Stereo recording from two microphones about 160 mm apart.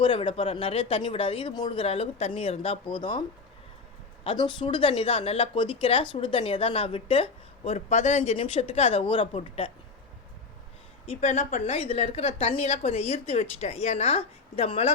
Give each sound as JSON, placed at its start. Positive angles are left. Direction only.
{"t": 0.0, "sound": "a woman's voice", "side_deg": 35}
{"t": 11.0, "sound": "a woman's voice", "side_deg": 40}